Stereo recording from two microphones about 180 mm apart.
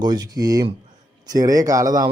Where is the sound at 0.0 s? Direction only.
20° right (ahead or behind).